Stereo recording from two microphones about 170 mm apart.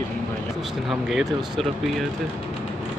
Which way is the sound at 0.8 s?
Centre (ahead or behind).